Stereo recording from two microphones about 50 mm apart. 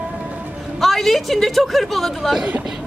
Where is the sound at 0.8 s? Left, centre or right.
Centre.